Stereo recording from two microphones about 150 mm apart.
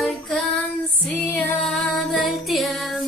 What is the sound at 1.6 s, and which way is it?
Music, centre (ahead or behind).